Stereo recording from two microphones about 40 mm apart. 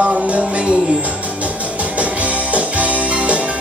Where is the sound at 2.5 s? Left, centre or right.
Right.